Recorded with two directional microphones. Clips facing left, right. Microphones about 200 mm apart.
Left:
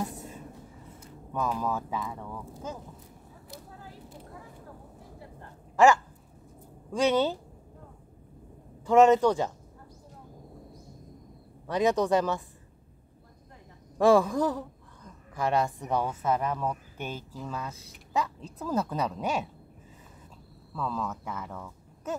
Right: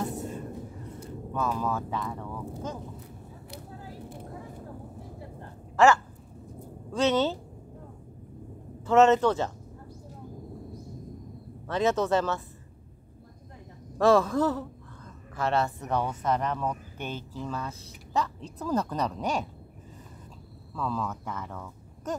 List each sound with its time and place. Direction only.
0.0 s a sound: 10° left (ahead or behind)
1.3 s speech: 10° left (ahead or behind)
5.8 s speech: 15° left (ahead or behind)
8.8 s speech: 15° left (ahead or behind)
11.6 s speech: 15° left (ahead or behind)
13.9 s speech: 10° left (ahead or behind)
20.7 s speech: 5° left (ahead or behind)